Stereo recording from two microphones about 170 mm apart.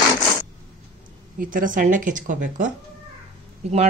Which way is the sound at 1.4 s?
55° right (ahead or behind).